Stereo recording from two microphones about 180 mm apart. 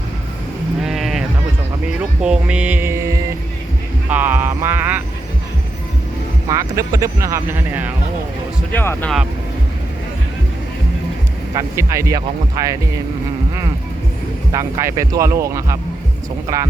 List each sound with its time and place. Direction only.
0.8 s vehicle: centre (ahead or behind)
2.2 s music: 5° right (ahead or behind)
6.5 s speech: 20° right (ahead or behind)
8.7 s speech: 10° left (ahead or behind)
11.5 s speech: 15° right (ahead or behind)
14.5 s speech: 15° right (ahead or behind)